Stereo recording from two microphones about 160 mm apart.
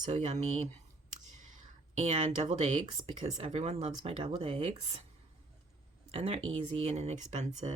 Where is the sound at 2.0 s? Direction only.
40° right (ahead or behind).